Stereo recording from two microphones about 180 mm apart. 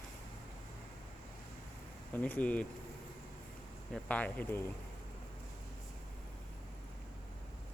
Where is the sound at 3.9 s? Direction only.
5° left (ahead or behind).